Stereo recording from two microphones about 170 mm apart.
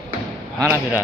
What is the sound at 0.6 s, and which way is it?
Speech, 15° right (ahead or behind).